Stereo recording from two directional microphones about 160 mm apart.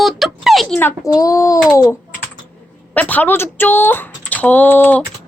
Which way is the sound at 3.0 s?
10° left (ahead or behind).